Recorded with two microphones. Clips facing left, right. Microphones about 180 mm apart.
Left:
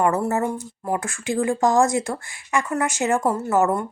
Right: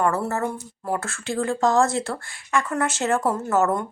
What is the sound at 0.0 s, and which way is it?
Speech, 15° left (ahead or behind).